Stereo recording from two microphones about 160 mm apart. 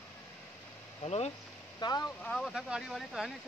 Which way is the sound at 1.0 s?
40° left (ahead or behind).